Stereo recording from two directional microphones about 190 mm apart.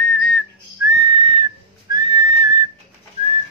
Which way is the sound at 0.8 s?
20° right (ahead or behind).